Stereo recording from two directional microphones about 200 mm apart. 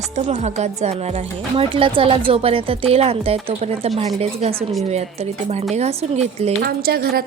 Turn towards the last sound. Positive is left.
turn(degrees=-50)  # may be behind; listen again after turning